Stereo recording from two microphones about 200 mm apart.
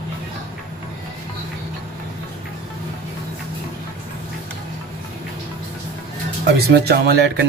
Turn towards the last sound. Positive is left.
turn(degrees=-55)  # may be behind; listen again after turning